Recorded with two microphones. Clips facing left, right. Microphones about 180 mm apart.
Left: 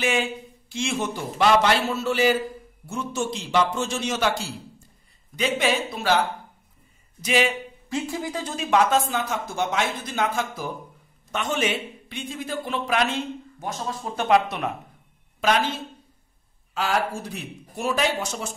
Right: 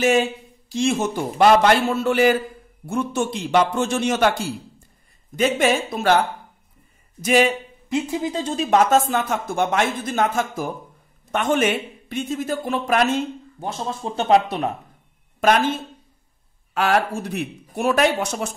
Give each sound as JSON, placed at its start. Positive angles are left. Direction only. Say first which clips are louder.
{"t": 0.0, "sound": "a man's voice", "louder": "right 6 dB", "side_deg": -40}
{"t": 7.9, "sound": "speech", "louder": "right 5 dB", "side_deg": -20}
{"t": 8.6, "sound": "a man's voice", "louder": "right 3 dB", "side_deg": -45}
{"t": 13.6, "sound": "speech", "louder": "right 4 dB", "side_deg": -25}
{"t": 15.4, "sound": "a man's voice", "louder": "right 4 dB", "side_deg": -50}
{"t": 16.7, "sound": "speech", "louder": "right 5 dB", "side_deg": -65}